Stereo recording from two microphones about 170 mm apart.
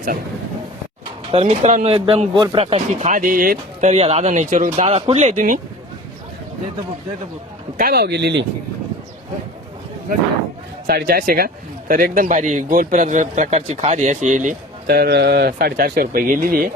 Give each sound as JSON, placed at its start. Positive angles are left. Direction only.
{"t": 1.3, "sound": "speech", "side_deg": -35}
{"t": 7.8, "sound": "speech", "side_deg": -65}
{"t": 10.8, "sound": "speech", "side_deg": -65}
{"t": 14.8, "sound": "speech", "side_deg": -65}